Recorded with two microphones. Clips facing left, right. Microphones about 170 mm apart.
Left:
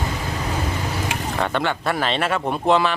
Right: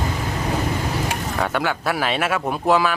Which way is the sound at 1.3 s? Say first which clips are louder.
Even; 5° right (ahead or behind).